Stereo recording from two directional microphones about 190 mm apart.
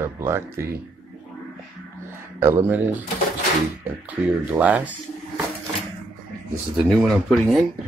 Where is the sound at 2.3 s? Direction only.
10° right (ahead or behind).